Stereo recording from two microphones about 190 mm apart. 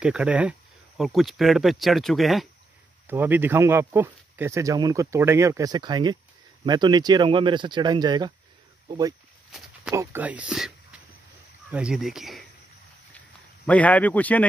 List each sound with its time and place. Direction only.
0.0 s speech: 5° right (ahead or behind)
13.7 s speech: 5° left (ahead or behind)